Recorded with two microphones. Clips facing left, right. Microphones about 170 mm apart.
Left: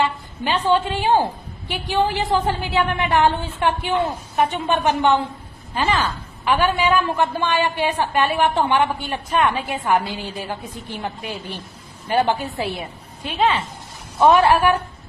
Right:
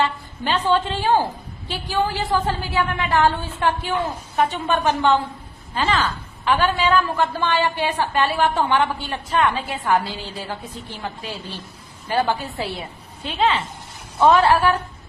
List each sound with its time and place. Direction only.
0.0 s a woman's voice: 15° left (ahead or behind)
14.2 s a woman's voice: 15° left (ahead or behind)